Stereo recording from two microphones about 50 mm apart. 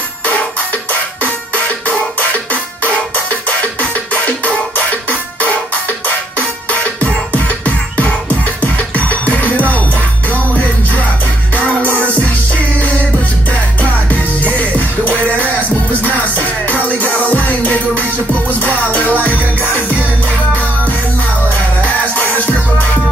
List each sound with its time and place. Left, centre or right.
0.2 s music: left
6.0 s music: left
21.5 s music: left